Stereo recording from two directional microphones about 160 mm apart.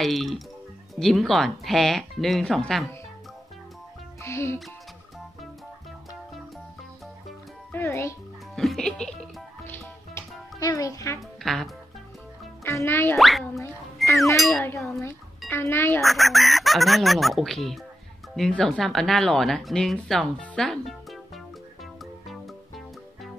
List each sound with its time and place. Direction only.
0.0 s speech: centre (ahead or behind)
4.2 s speech: 15° left (ahead or behind)
7.7 s a child's voice: 15° left (ahead or behind)
8.5 s music: centre (ahead or behind)
10.6 s a child's voice: 20° left (ahead or behind)
11.1 s speech: centre (ahead or behind)
12.6 s speech: 15° left (ahead or behind)
13.2 s speech: centre (ahead or behind)
14.0 s music: centre (ahead or behind)
14.3 s speech: centre (ahead or behind)
15.0 s speech: 15° left (ahead or behind)
16.0 s speech: centre (ahead or behind)